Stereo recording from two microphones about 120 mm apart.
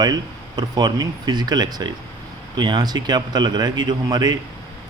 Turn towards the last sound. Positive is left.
turn(degrees=-35)  # may be behind; listen again after turning